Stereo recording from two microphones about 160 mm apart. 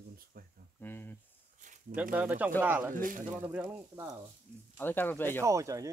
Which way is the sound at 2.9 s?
55° right (ahead or behind).